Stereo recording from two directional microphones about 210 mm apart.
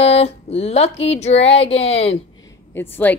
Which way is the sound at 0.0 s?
30° left (ahead or behind).